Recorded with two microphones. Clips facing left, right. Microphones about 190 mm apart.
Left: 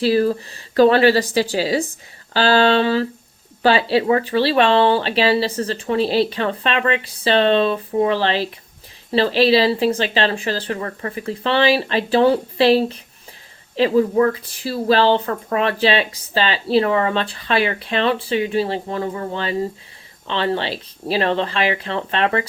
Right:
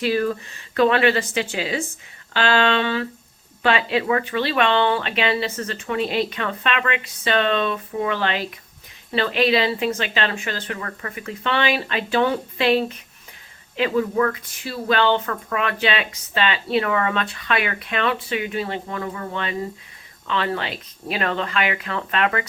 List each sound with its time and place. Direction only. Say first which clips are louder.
0.0 s speech: left 5 dB; 30° left (ahead or behind)